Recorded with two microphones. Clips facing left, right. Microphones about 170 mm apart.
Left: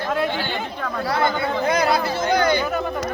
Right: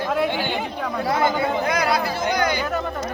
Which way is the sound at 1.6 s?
25° left (ahead or behind).